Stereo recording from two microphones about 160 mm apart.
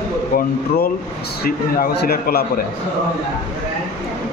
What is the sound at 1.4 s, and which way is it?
A man's voice, 85° left.